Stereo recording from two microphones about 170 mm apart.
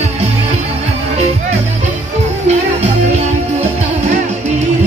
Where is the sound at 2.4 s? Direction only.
40° right (ahead or behind).